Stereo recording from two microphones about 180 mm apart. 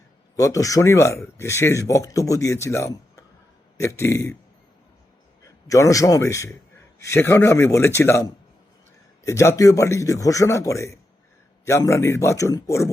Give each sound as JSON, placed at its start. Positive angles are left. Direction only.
{"t": 0.3, "sound": "speech", "side_deg": 20}
{"t": 5.6, "sound": "speech", "side_deg": 20}